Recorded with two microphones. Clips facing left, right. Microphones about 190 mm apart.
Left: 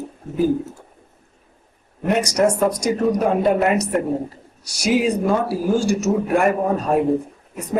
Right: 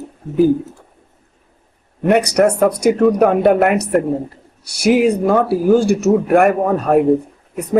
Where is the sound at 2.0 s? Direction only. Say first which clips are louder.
Right 5 dB; 60° right (ahead or behind).